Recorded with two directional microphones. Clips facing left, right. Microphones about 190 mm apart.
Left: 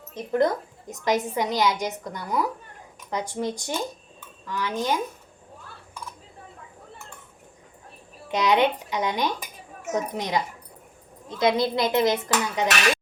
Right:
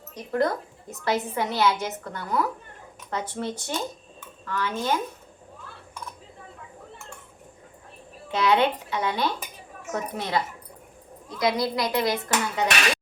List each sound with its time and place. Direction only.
0.1 s a woman's voice: 20° left (ahead or behind)
8.3 s a woman's voice: 15° left (ahead or behind)